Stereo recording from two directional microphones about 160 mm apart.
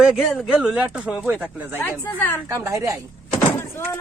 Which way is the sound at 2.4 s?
15° right (ahead or behind).